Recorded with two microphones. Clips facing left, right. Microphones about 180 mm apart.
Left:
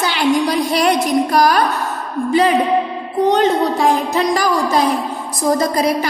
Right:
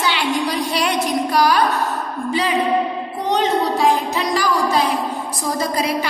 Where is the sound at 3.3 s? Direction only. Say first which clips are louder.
Right 1 dB; 50° left (ahead or behind).